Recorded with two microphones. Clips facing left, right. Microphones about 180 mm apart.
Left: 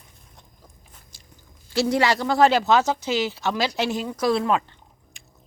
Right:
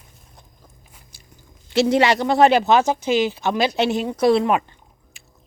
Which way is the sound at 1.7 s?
20° right (ahead or behind).